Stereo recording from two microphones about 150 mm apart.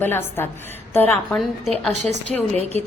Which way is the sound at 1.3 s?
5° left (ahead or behind).